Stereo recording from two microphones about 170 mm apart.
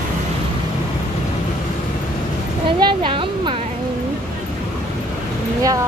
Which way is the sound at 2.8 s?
30° right (ahead or behind).